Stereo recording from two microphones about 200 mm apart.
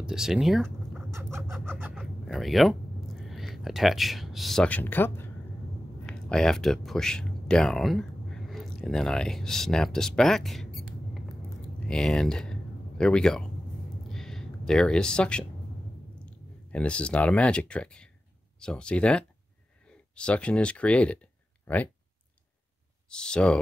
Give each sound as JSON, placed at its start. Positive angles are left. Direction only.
{"t": 0.0, "sound": "speech", "side_deg": -5}
{"t": 1.5, "sound": "pant", "side_deg": -10}
{"t": 6.0, "sound": "speech", "side_deg": 5}
{"t": 11.9, "sound": "speech", "side_deg": 0}
{"t": 14.1, "sound": "a sound", "side_deg": 0}
{"t": 16.3, "sound": "speech", "side_deg": 5}
{"t": 23.0, "sound": "speech", "side_deg": 5}